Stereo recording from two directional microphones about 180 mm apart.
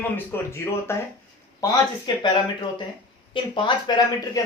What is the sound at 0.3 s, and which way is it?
Speech, 15° left (ahead or behind).